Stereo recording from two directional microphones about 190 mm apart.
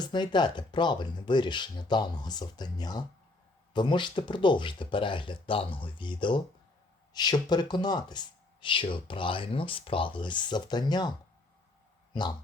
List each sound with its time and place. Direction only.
0.0 s speech: 25° left (ahead or behind)